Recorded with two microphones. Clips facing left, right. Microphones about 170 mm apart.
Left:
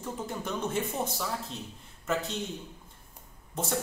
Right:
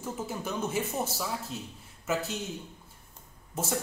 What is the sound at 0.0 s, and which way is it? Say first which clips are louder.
Speech: even; 5° right (ahead or behind).